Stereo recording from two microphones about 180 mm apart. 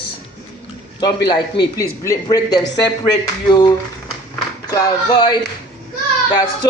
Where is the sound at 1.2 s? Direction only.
20° left (ahead or behind).